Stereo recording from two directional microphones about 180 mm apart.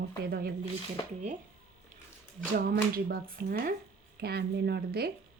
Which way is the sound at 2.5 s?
60° right (ahead or behind).